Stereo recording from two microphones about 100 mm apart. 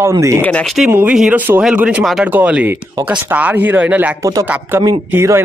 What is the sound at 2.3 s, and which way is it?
Speech, 15° right (ahead or behind).